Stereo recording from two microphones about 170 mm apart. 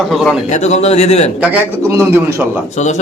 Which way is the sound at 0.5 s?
40° left (ahead or behind).